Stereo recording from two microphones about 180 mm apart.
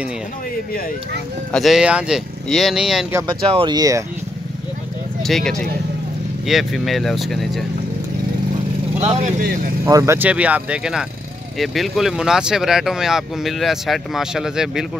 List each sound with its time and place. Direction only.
1.5 s speech: centre (ahead or behind)
3.3 s speech: 25° right (ahead or behind)
5.2 s speech: centre (ahead or behind)
9.0 s speech: 35° right (ahead or behind)
9.8 s speech: 15° right (ahead or behind)